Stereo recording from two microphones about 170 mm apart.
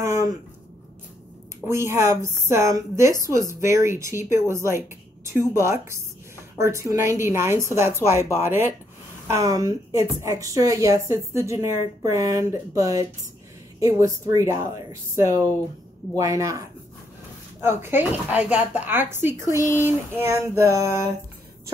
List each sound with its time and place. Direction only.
0.1 s a sound: 20° right (ahead or behind)
1.7 s a woman's voice: 15° right (ahead or behind)
19.5 s speech: 20° left (ahead or behind)
19.8 s a woman's voice: 15° right (ahead or behind)